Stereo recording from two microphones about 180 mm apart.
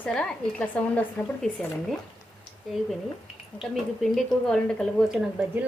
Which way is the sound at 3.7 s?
Centre (ahead or behind).